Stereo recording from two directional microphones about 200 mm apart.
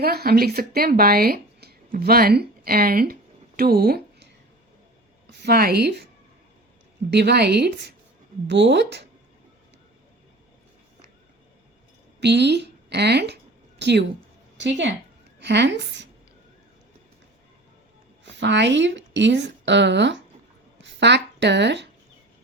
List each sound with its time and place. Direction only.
0.0 s speech: 50° right (ahead or behind)
5.4 s a woman's voice: 50° right (ahead or behind)
7.1 s a woman's voice: 55° right (ahead or behind)
12.2 s a woman's voice: 55° right (ahead or behind)
18.3 s a woman's voice: 60° right (ahead or behind)